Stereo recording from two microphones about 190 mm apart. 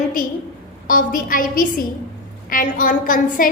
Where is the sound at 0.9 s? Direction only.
45° left (ahead or behind).